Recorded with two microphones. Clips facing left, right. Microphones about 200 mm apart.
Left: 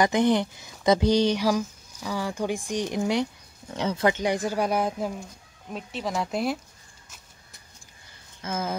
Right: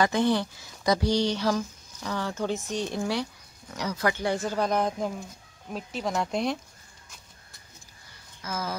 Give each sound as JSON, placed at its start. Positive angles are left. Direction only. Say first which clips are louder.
{"t": 0.0, "sound": "speech", "louder": "left 2 dB", "side_deg": 20}
{"t": 8.4, "sound": "speech", "louder": "left 3 dB", "side_deg": 25}